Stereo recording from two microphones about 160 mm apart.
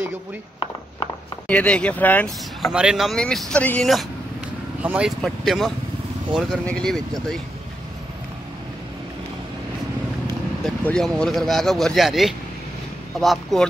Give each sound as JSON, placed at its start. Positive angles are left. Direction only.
{"t": 1.5, "sound": "speech", "side_deg": 10}
{"t": 2.6, "sound": "speech", "side_deg": -5}
{"t": 4.8, "sound": "speech", "side_deg": -5}
{"t": 10.9, "sound": "speech", "side_deg": 5}